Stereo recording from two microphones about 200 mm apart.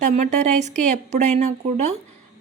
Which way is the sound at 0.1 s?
35° right (ahead or behind).